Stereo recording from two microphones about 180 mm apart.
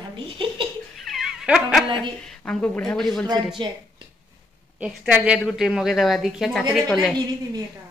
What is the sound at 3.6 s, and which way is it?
Speech, 25° right (ahead or behind).